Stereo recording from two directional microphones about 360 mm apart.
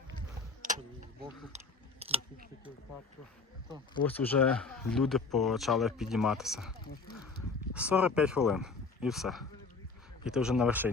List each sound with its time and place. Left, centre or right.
1.5 s chewing: centre
3.9 s speech: centre